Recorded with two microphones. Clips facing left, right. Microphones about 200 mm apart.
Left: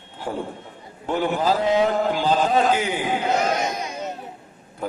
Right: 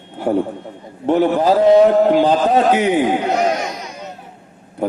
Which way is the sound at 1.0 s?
65° right (ahead or behind).